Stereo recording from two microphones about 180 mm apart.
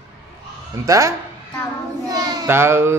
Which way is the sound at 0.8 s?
20° right (ahead or behind).